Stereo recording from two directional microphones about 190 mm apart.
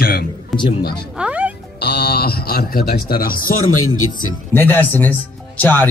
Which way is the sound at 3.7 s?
90° left.